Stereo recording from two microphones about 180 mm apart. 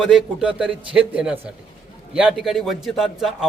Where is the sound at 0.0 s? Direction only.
Centre (ahead or behind).